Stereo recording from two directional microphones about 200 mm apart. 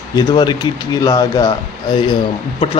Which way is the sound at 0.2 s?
20° left (ahead or behind).